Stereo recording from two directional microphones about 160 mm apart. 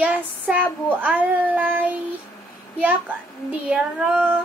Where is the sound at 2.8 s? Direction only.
10° right (ahead or behind).